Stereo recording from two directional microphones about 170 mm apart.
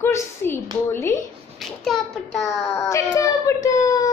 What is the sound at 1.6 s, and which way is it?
Speech, centre (ahead or behind).